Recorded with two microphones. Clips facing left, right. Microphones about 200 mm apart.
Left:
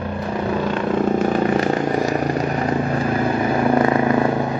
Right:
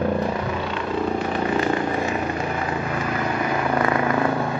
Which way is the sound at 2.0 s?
40° left (ahead or behind).